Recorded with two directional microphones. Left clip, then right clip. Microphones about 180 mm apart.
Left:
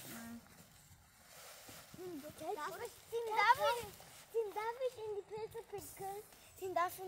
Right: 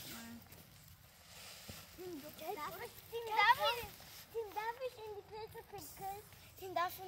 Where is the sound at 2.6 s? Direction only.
50° left (ahead or behind).